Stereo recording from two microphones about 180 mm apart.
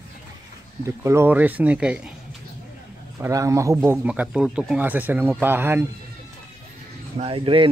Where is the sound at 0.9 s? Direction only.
15° right (ahead or behind).